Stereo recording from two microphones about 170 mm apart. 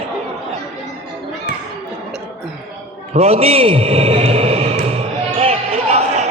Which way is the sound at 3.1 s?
40° right (ahead or behind).